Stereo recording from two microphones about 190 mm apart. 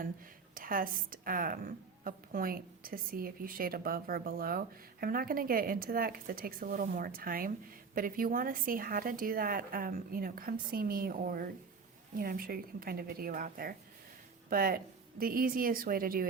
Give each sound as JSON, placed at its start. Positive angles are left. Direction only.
{"t": 0.5, "sound": "a woman's voice", "side_deg": -45}